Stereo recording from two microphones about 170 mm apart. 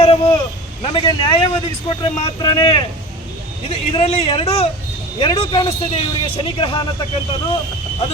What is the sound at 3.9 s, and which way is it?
Speech, 35° left (ahead or behind).